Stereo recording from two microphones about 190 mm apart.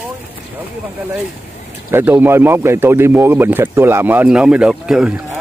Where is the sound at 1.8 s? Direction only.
10° right (ahead or behind).